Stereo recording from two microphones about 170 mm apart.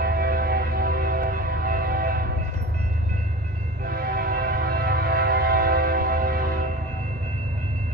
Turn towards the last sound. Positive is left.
turn(degrees=-55)  # may be behind; listen again after turning